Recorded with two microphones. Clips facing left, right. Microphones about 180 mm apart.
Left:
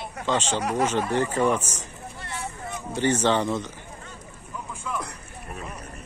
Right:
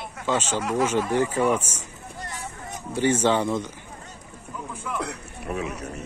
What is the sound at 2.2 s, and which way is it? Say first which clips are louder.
Vehicle: even; 40° right (ahead or behind).